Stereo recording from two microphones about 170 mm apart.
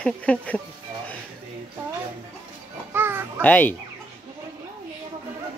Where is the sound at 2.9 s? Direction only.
15° right (ahead or behind).